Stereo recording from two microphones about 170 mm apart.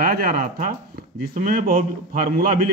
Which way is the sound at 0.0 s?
60° right (ahead or behind).